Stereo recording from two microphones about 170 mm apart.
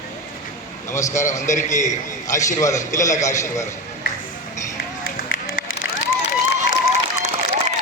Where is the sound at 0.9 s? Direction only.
15° left (ahead or behind).